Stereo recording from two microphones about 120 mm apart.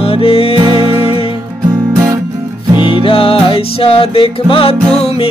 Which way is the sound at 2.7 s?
45° left (ahead or behind).